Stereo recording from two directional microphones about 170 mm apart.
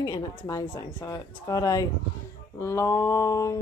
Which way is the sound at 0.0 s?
25° left (ahead or behind).